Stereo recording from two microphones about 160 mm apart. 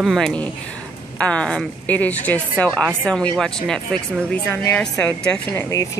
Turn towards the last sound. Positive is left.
turn(degrees=20)  # may be behind; listen again after turning